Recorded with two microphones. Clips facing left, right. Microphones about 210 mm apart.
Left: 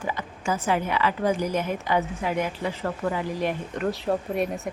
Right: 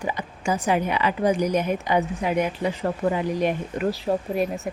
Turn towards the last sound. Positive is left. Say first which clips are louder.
# right 2 dB
turn(degrees=0)  # may be behind; listen again after turning